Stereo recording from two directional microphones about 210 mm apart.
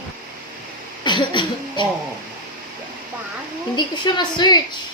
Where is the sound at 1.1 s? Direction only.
20° left (ahead or behind).